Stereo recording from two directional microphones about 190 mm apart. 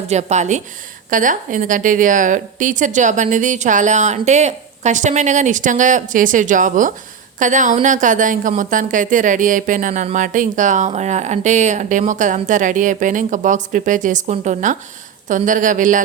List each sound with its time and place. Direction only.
0.1 s a woman's voice: 35° right (ahead or behind)